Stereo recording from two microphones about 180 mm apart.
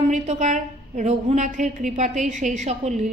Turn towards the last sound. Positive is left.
turn(degrees=-40)  # may be behind; listen again after turning